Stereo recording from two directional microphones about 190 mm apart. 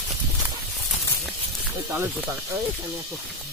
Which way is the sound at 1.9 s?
10° right (ahead or behind).